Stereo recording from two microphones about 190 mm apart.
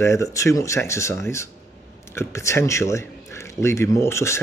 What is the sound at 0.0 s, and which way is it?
Speech, 15° left (ahead or behind).